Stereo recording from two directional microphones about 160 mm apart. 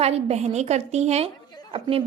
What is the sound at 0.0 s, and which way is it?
A woman's voice, 40° right (ahead or behind).